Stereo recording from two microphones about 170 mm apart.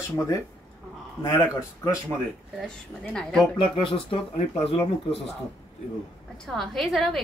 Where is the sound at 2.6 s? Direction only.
5° left (ahead or behind).